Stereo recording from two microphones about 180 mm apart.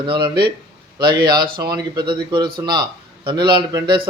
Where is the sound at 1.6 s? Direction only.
20° right (ahead or behind).